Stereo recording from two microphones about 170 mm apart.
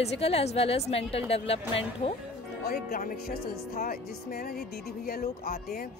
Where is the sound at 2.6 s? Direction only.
60° left (ahead or behind).